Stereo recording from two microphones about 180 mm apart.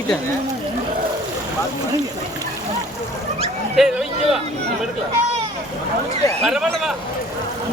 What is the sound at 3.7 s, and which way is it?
Speech, centre (ahead or behind).